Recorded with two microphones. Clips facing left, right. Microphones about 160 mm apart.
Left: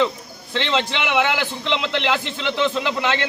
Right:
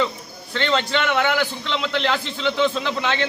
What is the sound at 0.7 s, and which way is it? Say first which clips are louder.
A man's voice: right 1 dB; 10° left (ahead or behind).